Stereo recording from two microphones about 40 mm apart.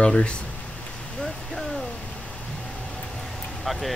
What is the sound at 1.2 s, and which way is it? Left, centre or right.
Vehicle, centre.